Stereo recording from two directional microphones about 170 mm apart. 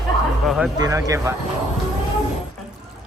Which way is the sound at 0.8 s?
20° right (ahead or behind).